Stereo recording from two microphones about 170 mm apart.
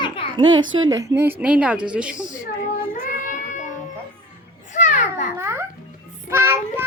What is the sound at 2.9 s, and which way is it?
Child singing, 50° left (ahead or behind).